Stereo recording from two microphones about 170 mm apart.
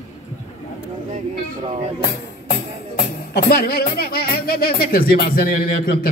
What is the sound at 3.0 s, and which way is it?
Music, 60° left (ahead or behind).